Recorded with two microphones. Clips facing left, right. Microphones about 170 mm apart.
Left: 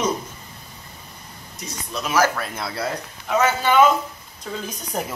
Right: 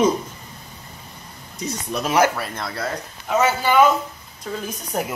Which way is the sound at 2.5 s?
10° left (ahead or behind).